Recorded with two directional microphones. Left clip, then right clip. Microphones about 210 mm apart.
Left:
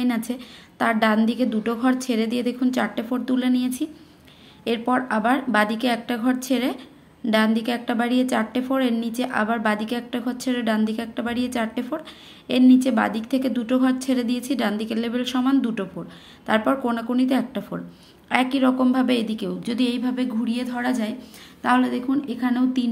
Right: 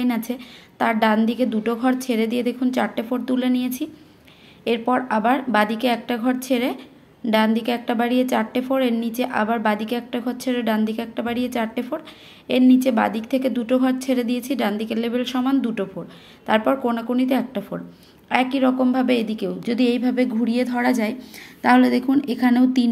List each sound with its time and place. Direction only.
0.0 s a woman's voice: centre (ahead or behind); by 22.8 s 25° right (ahead or behind)